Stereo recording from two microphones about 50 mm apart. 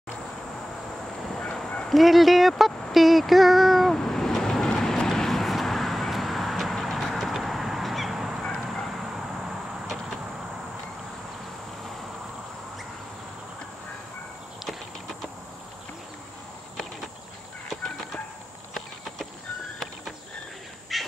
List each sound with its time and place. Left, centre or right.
1.4 s bow-wow: centre
1.9 s speech: centre
3.9 s a sound: centre
4.7 s vehicle: centre
18.7 s horse: centre
20.9 s a sound: centre